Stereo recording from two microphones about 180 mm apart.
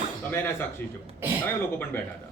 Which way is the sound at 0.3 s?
10° left (ahead or behind).